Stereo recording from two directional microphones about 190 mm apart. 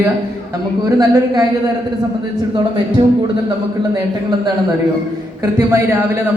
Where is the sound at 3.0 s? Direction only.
25° right (ahead or behind).